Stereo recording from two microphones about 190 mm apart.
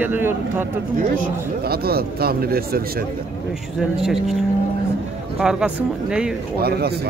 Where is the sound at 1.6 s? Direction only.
55° right (ahead or behind).